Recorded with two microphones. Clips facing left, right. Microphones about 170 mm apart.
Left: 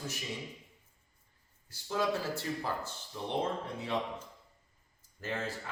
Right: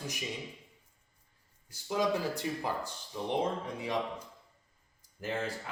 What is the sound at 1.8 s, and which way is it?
Speech, 15° right (ahead or behind).